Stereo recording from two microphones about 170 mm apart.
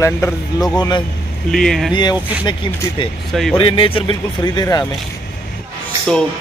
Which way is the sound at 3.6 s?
30° left (ahead or behind).